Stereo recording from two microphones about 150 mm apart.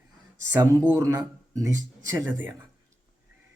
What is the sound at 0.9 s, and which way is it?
Speech, 20° right (ahead or behind).